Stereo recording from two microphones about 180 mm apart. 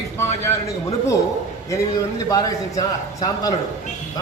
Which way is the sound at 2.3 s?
20° left (ahead or behind).